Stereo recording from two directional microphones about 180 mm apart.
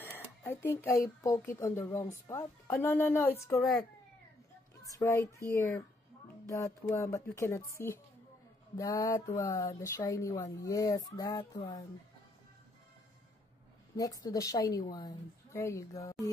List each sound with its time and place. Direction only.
0.0 s speech: 10° left (ahead or behind)
4.8 s speech: 20° left (ahead or behind)
14.2 s a woman's voice: 20° left (ahead or behind)